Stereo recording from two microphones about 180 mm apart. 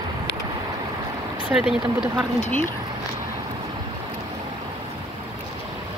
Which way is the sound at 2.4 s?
45° left (ahead or behind).